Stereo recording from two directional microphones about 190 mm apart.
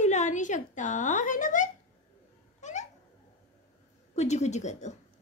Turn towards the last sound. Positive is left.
turn(degrees=35)  # may be behind; listen again after turning